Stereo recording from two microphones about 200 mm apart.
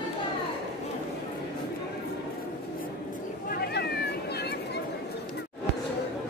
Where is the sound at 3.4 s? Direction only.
50° left (ahead or behind).